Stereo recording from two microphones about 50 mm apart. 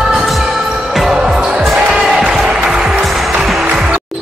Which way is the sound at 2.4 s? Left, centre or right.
Centre.